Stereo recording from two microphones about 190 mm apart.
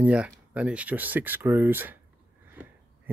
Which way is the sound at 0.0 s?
5° right (ahead or behind).